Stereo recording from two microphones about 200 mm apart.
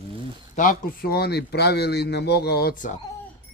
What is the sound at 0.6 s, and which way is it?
Speech, 45° left (ahead or behind).